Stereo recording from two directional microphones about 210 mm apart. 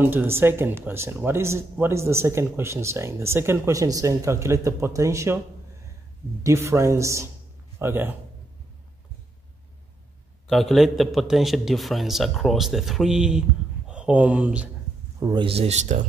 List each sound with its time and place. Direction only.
0.0 s speech: 10° right (ahead or behind)
6.4 s speech: 15° right (ahead or behind)
10.4 s a man's voice: centre (ahead or behind)
15.1 s speech: 20° right (ahead or behind)